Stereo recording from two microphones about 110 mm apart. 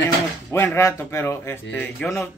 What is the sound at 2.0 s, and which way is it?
Speech, 10° left (ahead or behind).